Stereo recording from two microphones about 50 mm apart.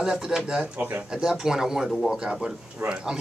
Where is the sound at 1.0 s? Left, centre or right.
Centre.